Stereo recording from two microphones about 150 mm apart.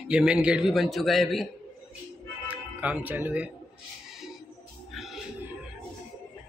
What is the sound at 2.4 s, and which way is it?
Speech, 10° right (ahead or behind).